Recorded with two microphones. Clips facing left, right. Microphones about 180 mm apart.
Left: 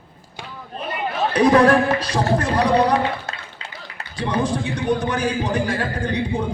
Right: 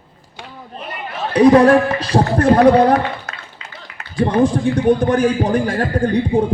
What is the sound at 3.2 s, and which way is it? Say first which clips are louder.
Run: left 1 dB; 30° left (ahead or behind).